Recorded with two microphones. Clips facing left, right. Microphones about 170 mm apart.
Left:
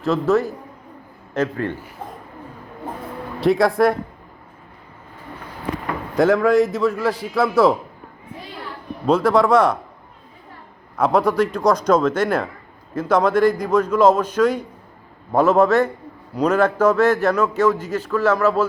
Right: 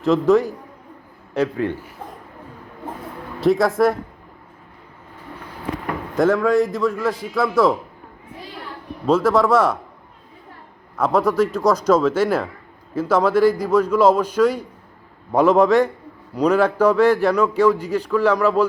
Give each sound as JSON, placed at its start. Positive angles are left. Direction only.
{"t": 0.0, "sound": "a man's voice", "side_deg": -15}
{"t": 3.4, "sound": "a man's voice", "side_deg": 0}
{"t": 6.1, "sound": "a man's voice", "side_deg": 0}
{"t": 9.0, "sound": "a man's voice", "side_deg": -5}
{"t": 10.9, "sound": "a man's voice", "side_deg": 0}